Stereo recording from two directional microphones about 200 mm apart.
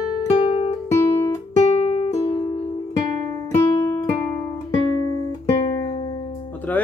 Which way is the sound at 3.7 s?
15° left (ahead or behind).